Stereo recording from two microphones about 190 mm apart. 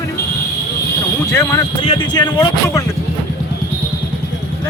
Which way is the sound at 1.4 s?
20° left (ahead or behind).